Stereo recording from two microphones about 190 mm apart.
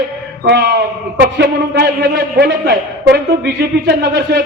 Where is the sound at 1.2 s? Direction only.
55° right (ahead or behind).